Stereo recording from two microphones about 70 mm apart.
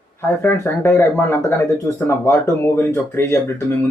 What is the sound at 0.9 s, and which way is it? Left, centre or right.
Speech, left.